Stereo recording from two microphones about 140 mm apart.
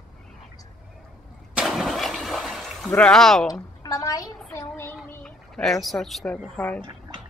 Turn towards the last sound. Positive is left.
turn(degrees=10)  # may be behind; listen again after turning